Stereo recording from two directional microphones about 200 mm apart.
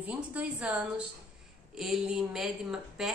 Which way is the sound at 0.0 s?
5° right (ahead or behind).